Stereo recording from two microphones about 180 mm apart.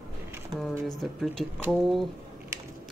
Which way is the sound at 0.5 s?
25° right (ahead or behind).